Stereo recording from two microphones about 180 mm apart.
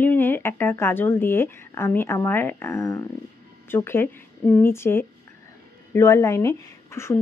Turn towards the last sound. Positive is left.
turn(degrees=15)  # may be behind; listen again after turning